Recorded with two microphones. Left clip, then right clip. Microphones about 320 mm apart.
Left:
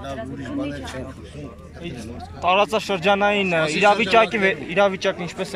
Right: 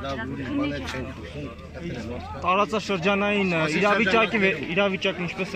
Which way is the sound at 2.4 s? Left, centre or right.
Left.